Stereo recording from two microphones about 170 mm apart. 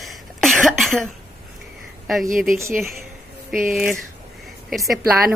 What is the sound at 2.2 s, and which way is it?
Speech, 50° right (ahead or behind).